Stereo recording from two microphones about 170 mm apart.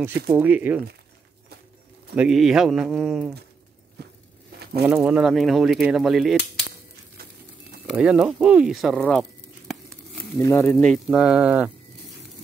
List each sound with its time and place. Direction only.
0.3 s speech: 10° right (ahead or behind)
2.1 s speech: 5° right (ahead or behind)
4.0 s a sound: 70° right (ahead or behind)
4.8 s speech: 5° right (ahead or behind)
7.8 s speech: 5° right (ahead or behind)
10.4 s speech: 10° left (ahead or behind); by 11.7 s 5° right (ahead or behind)